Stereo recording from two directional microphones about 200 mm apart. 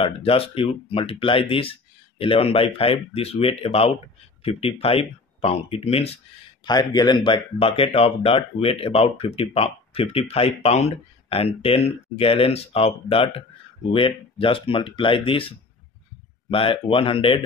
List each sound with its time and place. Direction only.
0.0 s speech: 25° left (ahead or behind)